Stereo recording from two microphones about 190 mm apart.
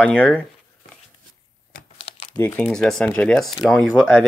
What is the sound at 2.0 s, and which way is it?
Crumpling, 30° left (ahead or behind).